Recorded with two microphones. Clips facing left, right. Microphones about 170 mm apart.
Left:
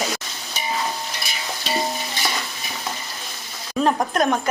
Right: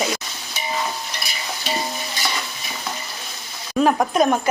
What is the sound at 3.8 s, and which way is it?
Speech, 5° right (ahead or behind).